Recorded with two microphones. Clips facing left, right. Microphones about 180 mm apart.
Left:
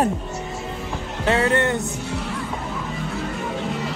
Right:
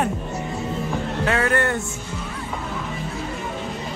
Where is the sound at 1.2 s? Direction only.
25° left (ahead or behind).